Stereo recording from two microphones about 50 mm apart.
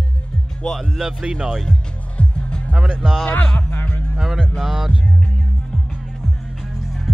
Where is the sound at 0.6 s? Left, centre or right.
Centre.